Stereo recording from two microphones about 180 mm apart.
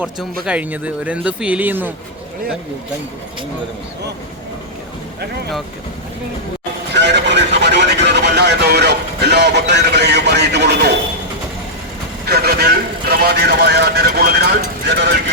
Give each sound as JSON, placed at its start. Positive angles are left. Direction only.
{"t": 0.4, "sound": "speech", "side_deg": -10}
{"t": 6.9, "sound": "radio", "side_deg": -70}
{"t": 12.2, "sound": "speech", "side_deg": -60}